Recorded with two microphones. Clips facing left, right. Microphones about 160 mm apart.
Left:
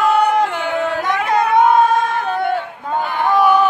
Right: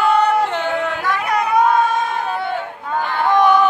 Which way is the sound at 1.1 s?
25° left (ahead or behind).